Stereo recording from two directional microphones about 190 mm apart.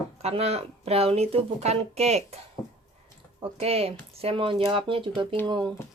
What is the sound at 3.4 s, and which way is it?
Speech, 30° right (ahead or behind).